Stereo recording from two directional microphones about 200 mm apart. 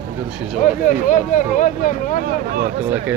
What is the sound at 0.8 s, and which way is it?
Speech, 40° left (ahead or behind).